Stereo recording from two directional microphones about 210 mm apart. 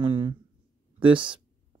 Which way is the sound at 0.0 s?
25° right (ahead or behind).